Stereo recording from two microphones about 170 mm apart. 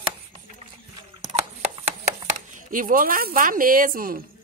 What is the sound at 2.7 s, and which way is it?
A woman's voice, 55° right (ahead or behind).